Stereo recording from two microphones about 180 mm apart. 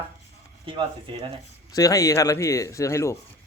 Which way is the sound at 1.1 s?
25° right (ahead or behind).